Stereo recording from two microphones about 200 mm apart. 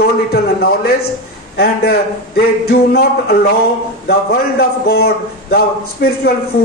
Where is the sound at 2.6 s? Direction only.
50° left (ahead or behind).